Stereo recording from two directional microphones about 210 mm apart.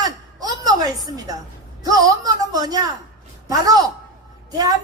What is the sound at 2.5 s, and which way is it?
A woman's voice, 20° right (ahead or behind).